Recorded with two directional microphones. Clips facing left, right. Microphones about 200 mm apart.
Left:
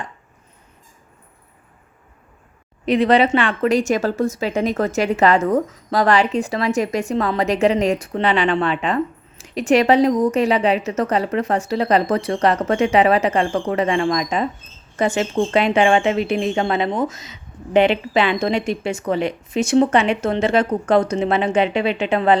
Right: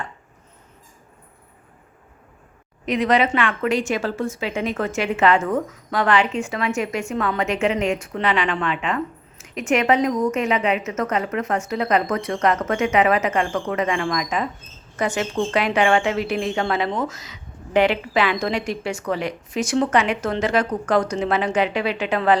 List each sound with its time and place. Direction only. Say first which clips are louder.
2.8 s a woman's voice: left 4 dB; 30° left (ahead or behind)